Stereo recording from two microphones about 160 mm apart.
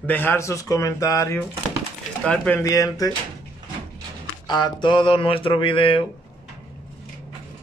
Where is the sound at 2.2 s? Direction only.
5° left (ahead or behind).